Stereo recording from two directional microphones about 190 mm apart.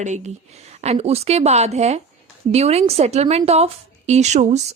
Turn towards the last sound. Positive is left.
turn(degrees=-35)  # may be behind; listen again after turning